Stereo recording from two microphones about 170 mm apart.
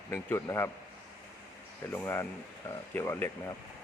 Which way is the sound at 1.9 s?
15° left (ahead or behind).